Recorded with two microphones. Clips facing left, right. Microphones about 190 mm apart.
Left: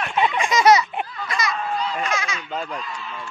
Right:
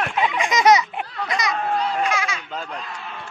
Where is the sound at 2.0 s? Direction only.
10° right (ahead or behind).